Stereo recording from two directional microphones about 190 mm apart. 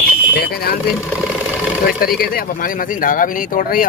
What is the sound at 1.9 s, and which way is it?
Speech, 50° left (ahead or behind).